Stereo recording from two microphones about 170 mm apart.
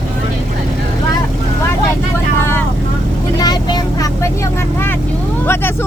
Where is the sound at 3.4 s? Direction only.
25° left (ahead or behind).